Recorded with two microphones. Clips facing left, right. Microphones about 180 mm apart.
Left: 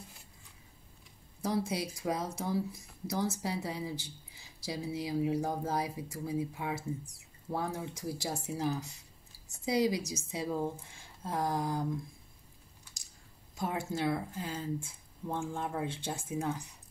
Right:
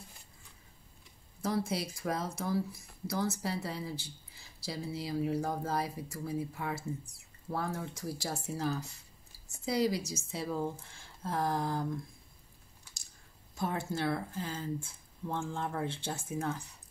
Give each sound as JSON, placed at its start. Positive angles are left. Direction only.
{"t": 1.4, "sound": "speech", "side_deg": 20}
{"t": 13.6, "sound": "speech", "side_deg": 15}